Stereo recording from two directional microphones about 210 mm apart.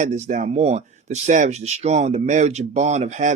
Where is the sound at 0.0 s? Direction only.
35° right (ahead or behind).